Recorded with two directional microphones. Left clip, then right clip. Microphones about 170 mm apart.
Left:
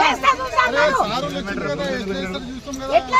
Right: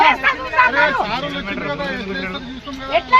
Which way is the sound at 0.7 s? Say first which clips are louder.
Right 2 dB; 60° left (ahead or behind).